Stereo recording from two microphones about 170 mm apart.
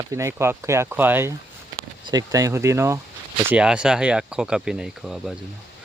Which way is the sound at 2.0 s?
25° right (ahead or behind).